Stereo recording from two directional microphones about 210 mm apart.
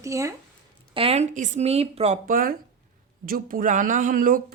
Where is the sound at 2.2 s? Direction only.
45° right (ahead or behind).